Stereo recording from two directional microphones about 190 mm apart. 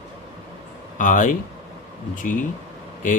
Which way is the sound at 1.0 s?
40° left (ahead or behind).